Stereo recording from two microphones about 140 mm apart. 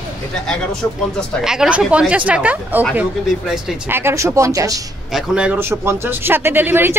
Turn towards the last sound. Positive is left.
turn(degrees=-15)  # may be behind; listen again after turning